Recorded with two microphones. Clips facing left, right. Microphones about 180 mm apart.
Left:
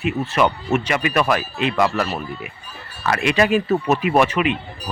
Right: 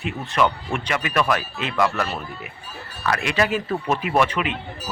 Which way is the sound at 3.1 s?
20° left (ahead or behind).